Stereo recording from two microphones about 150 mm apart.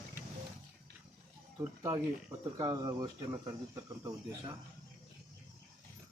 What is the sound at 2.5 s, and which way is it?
Speech, 25° right (ahead or behind).